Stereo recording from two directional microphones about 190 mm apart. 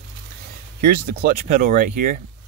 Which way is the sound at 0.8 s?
55° right (ahead or behind).